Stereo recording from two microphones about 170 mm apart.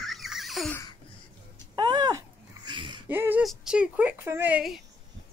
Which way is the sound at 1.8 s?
25° right (ahead or behind).